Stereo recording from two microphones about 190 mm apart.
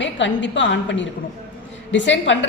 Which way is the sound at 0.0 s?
70° left (ahead or behind).